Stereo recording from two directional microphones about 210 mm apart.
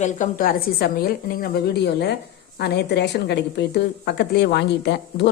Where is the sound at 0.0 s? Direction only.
40° left (ahead or behind).